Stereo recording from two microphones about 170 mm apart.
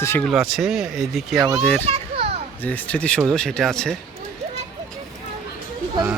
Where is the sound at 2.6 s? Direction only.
10° left (ahead or behind).